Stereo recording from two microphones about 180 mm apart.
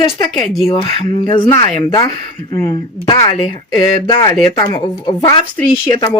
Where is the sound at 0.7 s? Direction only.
30° left (ahead or behind).